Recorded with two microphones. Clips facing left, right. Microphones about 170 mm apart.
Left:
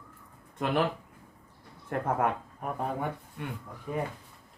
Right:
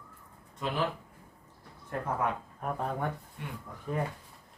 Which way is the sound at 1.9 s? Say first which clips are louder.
Left 4 dB; 60° left (ahead or behind).